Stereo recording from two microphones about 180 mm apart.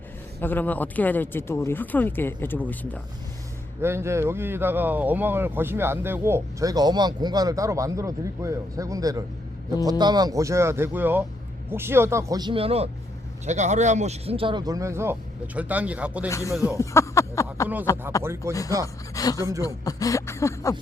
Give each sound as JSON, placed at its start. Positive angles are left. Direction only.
{"t": 0.3, "sound": "speech", "side_deg": 10}
{"t": 3.8, "sound": "speech", "side_deg": -15}
{"t": 16.3, "sound": "speech", "side_deg": 15}
{"t": 16.7, "sound": "a sound", "side_deg": 15}
{"t": 18.2, "sound": "speech", "side_deg": -15}
{"t": 19.1, "sound": "speech", "side_deg": 20}